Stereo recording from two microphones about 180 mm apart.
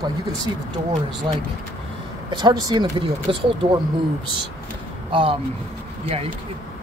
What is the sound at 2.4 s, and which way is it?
Speech, 25° right (ahead or behind).